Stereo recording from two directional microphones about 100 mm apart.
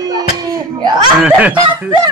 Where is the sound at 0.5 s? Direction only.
45° right (ahead or behind).